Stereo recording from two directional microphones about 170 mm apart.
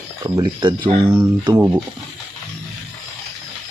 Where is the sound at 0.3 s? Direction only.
25° right (ahead or behind).